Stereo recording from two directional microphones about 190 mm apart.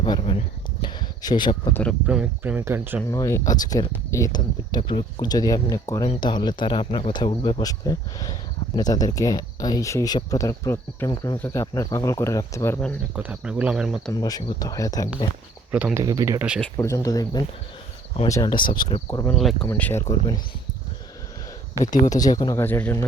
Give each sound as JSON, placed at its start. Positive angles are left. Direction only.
{"t": 0.0, "sound": "a sound", "side_deg": 25}
{"t": 1.7, "sound": "speech", "side_deg": 5}
{"t": 2.0, "sound": "speech", "side_deg": -5}
{"t": 3.1, "sound": "speech", "side_deg": 15}
{"t": 13.1, "sound": "speech", "side_deg": -5}
{"t": 14.1, "sound": "speech", "side_deg": 20}
{"t": 15.7, "sound": "speech", "side_deg": -10}
{"t": 16.0, "sound": "speech", "side_deg": -20}
{"t": 16.6, "sound": "speech", "side_deg": 10}
{"t": 19.3, "sound": "speech", "side_deg": 0}
{"t": 19.6, "sound": "speech", "side_deg": 10}
{"t": 21.8, "sound": "speech", "side_deg": 20}